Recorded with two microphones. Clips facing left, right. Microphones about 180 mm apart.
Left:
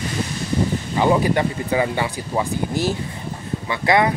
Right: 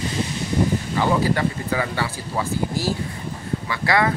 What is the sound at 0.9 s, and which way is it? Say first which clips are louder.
Speech: left 4 dB; 20° left (ahead or behind).